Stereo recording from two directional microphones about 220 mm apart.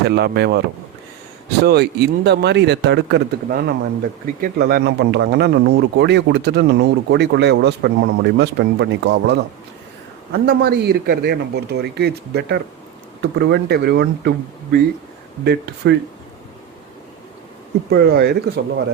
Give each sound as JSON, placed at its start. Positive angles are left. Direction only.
{"t": 0.0, "sound": "speech", "side_deg": -50}
{"t": 1.6, "sound": "speech", "side_deg": -50}
{"t": 10.3, "sound": "speech", "side_deg": -45}
{"t": 17.8, "sound": "speech", "side_deg": -45}